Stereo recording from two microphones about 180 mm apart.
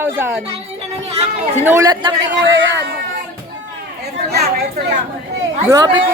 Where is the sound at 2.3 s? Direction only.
85° right.